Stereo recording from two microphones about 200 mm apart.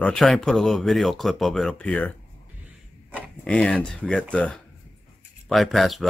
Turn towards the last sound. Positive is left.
turn(degrees=0)  # may be behind; listen again after turning